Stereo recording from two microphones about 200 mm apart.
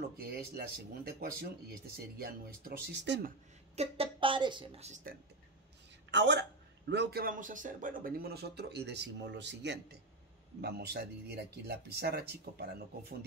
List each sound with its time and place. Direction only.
0.2 s speech: 50° right (ahead or behind)
3.7 s speech: 30° right (ahead or behind)
6.1 s a woman's voice: 60° right (ahead or behind)